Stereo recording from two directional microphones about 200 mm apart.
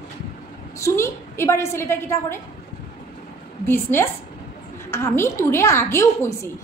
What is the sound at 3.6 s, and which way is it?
A woman's voice, 10° left (ahead or behind).